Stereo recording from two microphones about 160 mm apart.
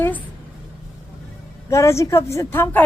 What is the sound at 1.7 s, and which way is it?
Speech, 20° left (ahead or behind).